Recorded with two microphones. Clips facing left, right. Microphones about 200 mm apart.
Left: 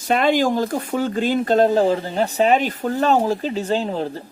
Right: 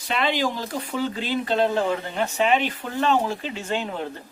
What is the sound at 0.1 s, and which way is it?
A woman's voice, 45° left (ahead or behind).